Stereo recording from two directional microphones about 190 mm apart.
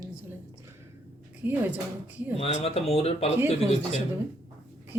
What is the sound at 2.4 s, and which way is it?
Speech, 30° left (ahead or behind).